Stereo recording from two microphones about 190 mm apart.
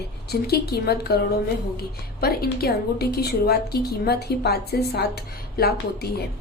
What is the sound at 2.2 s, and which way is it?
A woman's voice, 55° left (ahead or behind).